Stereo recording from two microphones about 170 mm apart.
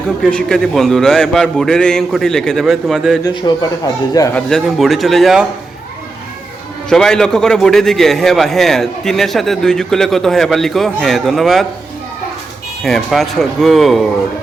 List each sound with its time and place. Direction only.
0.2 s a man's voice: 5° left (ahead or behind)
3.2 s a man's voice: 25° left (ahead or behind)
4.4 s a man's voice: centre (ahead or behind)
6.9 s a man's voice: 5° left (ahead or behind)
12.8 s a man's voice: centre (ahead or behind)